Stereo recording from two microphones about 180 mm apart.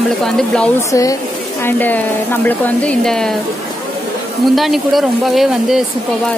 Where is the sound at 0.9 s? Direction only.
20° left (ahead or behind); by 3.4 s 5° left (ahead or behind).